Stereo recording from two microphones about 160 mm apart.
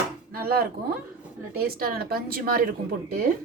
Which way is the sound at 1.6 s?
70° right (ahead or behind).